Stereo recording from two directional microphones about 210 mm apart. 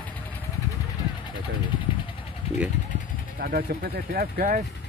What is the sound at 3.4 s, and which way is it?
Speech, 45° right (ahead or behind).